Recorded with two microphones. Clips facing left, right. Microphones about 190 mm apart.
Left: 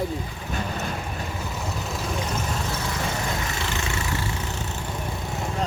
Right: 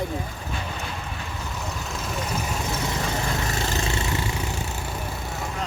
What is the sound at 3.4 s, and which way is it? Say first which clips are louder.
Vehicle: right 2 dB; 40° right (ahead or behind).